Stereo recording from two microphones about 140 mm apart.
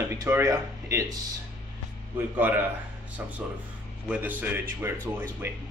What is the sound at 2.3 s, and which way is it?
A man's voice, 15° right (ahead or behind).